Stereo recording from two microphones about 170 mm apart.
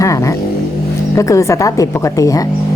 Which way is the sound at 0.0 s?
20° left (ahead or behind).